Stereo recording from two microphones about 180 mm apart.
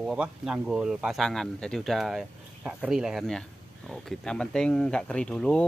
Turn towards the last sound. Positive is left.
turn(degrees=5)  # may be behind; listen again after turning